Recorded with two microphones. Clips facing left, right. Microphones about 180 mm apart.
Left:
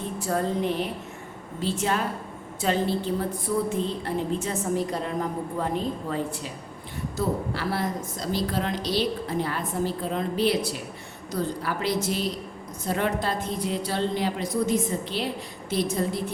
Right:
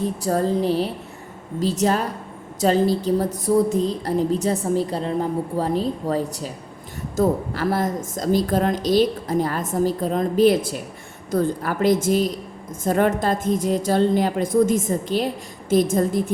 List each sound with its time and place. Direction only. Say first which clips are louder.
0.0 s a woman's voice: right 6 dB; 35° right (ahead or behind)